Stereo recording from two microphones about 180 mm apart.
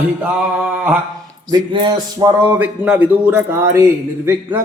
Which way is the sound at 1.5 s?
25° right (ahead or behind).